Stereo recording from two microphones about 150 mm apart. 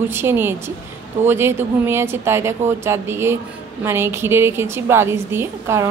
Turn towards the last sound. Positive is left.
turn(degrees=-15)  # may be behind; listen again after turning